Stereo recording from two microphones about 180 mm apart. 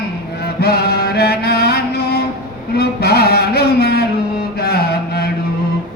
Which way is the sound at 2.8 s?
60° left (ahead or behind).